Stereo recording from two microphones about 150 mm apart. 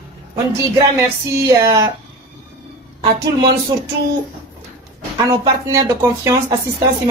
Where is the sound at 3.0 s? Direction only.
35° right (ahead or behind).